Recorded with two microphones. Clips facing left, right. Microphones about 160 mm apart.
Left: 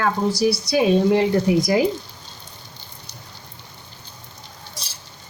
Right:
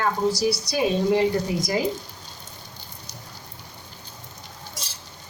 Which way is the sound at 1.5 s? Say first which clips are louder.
Left 9 dB; 90° left.